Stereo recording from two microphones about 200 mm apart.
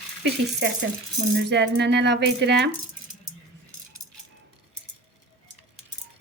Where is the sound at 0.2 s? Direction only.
60° right (ahead or behind).